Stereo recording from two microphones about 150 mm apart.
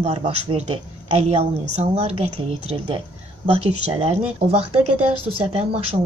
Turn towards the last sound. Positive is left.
turn(degrees=-40)  # may be behind; listen again after turning